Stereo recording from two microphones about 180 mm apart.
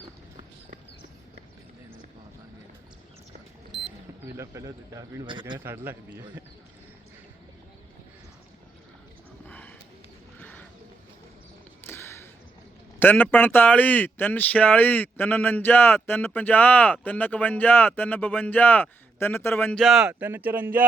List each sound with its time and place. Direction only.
4.2 s speech: 15° right (ahead or behind)
5.5 s speech: 10° right (ahead or behind)
9.5 s a sound: 10° left (ahead or behind)
11.9 s a sound: 15° left (ahead or behind)
13.0 s speech: 10° left (ahead or behind)
19.8 s speech: centre (ahead or behind)